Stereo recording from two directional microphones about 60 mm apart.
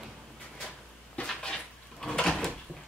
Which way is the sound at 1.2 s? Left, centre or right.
Centre.